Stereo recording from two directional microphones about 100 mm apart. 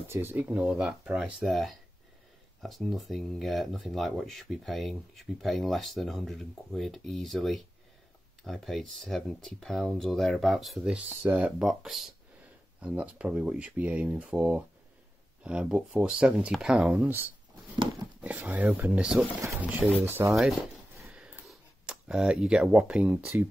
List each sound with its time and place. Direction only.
0.1 s speech: 20° right (ahead or behind); by 10.8 s centre (ahead or behind)
10.8 s speech: 15° right (ahead or behind)
18.8 s speech: 15° right (ahead or behind)
20.2 s speech: 5° right (ahead or behind)
21.1 s a sound: 10° right (ahead or behind)
21.5 s speech: 5° right (ahead or behind)